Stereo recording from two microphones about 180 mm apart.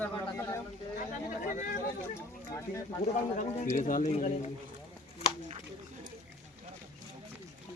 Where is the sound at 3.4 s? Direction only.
45° left (ahead or behind).